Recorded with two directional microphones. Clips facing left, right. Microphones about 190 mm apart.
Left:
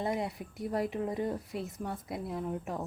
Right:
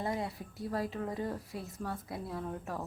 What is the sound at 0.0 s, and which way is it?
Speech, 20° left (ahead or behind).